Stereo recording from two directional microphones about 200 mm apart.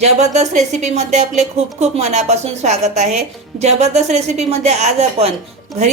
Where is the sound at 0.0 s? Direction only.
35° right (ahead or behind).